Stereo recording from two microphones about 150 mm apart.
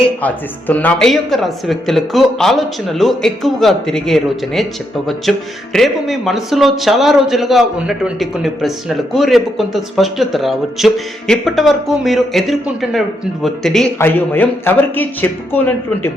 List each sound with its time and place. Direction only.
0.2 s speech: 10° left (ahead or behind)
14.0 s speech: 15° left (ahead or behind)